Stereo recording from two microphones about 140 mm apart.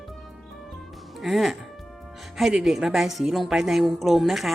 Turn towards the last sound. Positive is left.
turn(degrees=0)  # may be behind; listen again after turning